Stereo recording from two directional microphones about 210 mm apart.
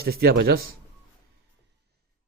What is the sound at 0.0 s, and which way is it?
Speech, 50° right (ahead or behind).